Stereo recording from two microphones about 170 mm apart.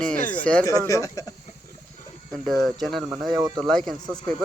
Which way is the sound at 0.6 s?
20° left (ahead or behind).